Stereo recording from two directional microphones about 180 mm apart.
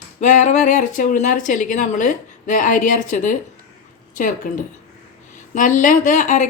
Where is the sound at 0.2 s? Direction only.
40° left (ahead or behind).